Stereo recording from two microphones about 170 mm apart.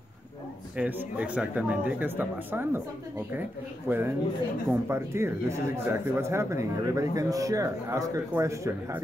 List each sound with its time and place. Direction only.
0.7 s speech: 5° right (ahead or behind)
3.9 s speech: 10° right (ahead or behind)